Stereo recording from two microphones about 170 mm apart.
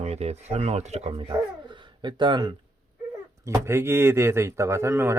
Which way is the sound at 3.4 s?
15° right (ahead or behind).